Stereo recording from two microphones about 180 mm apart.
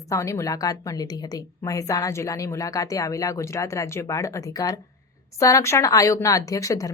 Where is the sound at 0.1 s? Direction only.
15° left (ahead or behind).